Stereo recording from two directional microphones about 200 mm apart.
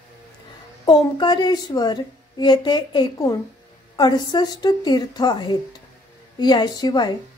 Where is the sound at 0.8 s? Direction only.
20° left (ahead or behind).